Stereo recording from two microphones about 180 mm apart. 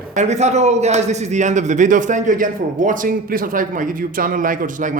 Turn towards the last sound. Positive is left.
turn(degrees=-45)  # may be behind; listen again after turning